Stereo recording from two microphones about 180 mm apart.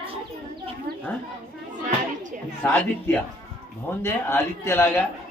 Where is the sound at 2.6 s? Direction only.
10° left (ahead or behind).